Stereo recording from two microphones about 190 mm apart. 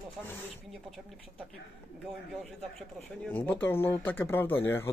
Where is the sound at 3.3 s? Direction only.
10° left (ahead or behind).